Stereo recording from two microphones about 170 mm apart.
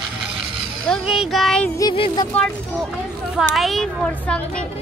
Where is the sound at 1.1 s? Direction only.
Centre (ahead or behind).